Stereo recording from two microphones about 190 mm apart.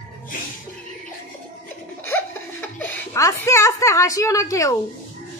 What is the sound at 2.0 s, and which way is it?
Giggle, 10° left (ahead or behind).